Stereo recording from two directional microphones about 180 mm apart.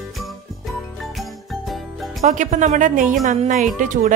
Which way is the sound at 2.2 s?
40° right (ahead or behind).